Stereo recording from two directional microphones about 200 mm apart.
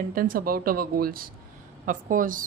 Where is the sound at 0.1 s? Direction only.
45° right (ahead or behind).